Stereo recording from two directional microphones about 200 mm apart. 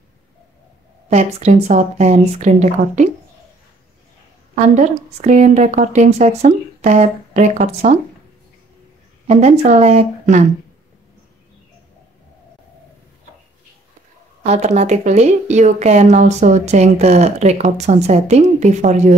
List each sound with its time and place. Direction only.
1.1 s speech: 35° right (ahead or behind)
4.7 s speech: 35° right (ahead or behind)
9.3 s speech: 35° right (ahead or behind)
14.4 s speech: 35° right (ahead or behind)